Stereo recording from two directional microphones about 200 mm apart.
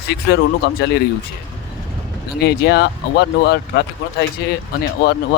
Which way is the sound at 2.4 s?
55° left (ahead or behind).